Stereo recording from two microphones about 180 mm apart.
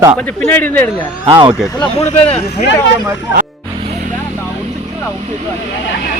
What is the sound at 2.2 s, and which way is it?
Speech, 35° left (ahead or behind).